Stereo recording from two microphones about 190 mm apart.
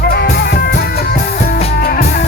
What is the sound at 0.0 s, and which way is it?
Music, 55° left (ahead or behind).